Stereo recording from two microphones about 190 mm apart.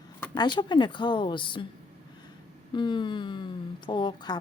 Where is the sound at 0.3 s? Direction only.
25° left (ahead or behind).